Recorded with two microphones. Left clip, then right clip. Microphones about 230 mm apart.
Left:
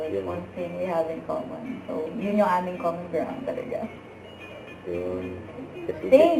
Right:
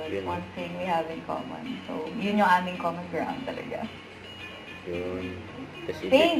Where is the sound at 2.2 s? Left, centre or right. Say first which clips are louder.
Right 1 dB; centre.